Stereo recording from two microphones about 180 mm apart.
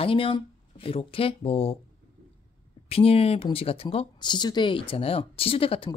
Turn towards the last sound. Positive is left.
turn(degrees=30)  # may be behind; listen again after turning